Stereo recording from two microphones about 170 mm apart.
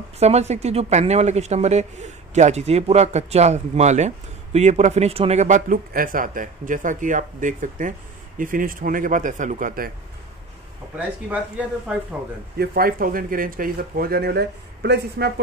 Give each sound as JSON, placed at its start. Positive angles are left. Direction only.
{"t": 0.2, "sound": "speech", "side_deg": -40}
{"t": 11.0, "sound": "speech", "side_deg": -10}
{"t": 12.5, "sound": "speech", "side_deg": -60}